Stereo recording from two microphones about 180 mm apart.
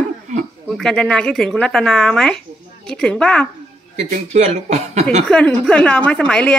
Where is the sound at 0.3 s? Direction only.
45° right (ahead or behind).